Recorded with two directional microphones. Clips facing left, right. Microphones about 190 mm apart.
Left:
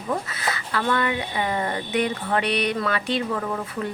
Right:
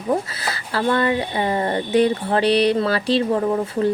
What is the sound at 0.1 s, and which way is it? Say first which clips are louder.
Speech: right 5 dB; 30° right (ahead or behind).